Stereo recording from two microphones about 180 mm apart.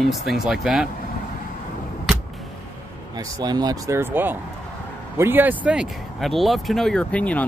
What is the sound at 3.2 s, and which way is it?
Speech, 20° right (ahead or behind).